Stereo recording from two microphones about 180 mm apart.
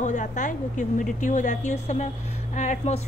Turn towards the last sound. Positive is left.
turn(degrees=40)  # may be behind; listen again after turning